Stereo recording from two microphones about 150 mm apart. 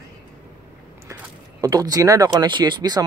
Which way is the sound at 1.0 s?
20° right (ahead or behind).